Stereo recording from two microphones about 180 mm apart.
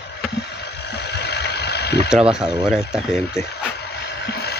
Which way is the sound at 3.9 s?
65° left (ahead or behind).